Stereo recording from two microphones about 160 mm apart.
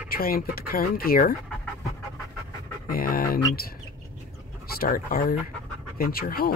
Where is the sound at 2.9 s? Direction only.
65° left (ahead or behind).